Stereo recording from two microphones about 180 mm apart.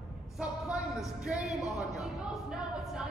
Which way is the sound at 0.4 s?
5° right (ahead or behind).